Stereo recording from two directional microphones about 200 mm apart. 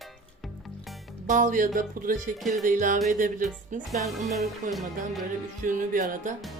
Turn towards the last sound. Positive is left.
turn(degrees=-40)  # may be behind; listen again after turning